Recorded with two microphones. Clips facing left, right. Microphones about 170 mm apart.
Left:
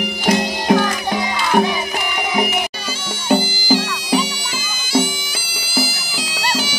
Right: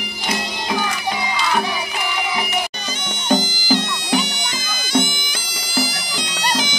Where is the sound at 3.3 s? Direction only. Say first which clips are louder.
Left 2 dB; 10° left (ahead or behind).